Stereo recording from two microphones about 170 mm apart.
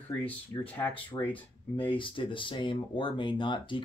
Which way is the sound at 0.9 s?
30° left (ahead or behind).